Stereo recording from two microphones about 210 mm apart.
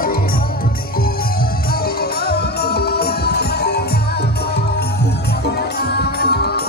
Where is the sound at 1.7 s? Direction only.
45° left (ahead or behind).